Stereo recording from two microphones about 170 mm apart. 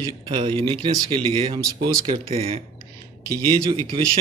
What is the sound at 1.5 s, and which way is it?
Speech, 20° right (ahead or behind).